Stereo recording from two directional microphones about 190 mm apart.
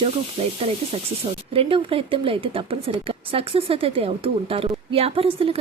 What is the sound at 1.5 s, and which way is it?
A woman's voice, 30° right (ahead or behind).